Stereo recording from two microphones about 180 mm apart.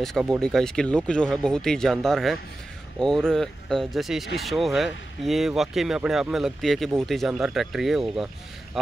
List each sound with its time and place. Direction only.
0.0 s speech: centre (ahead or behind)